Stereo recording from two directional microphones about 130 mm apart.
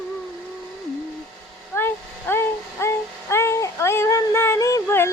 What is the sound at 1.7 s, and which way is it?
Child singing, 15° left (ahead or behind).